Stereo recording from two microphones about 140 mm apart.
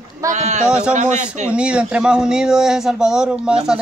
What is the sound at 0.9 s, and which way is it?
Speech, 60° right (ahead or behind).